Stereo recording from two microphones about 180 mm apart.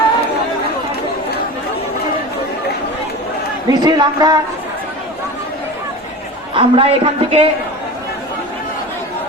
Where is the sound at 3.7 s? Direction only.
20° right (ahead or behind).